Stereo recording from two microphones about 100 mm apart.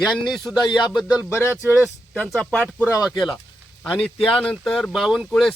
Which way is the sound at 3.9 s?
5° left (ahead or behind).